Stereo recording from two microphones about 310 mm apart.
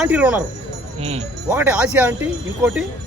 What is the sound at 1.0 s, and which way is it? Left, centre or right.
Speech, centre.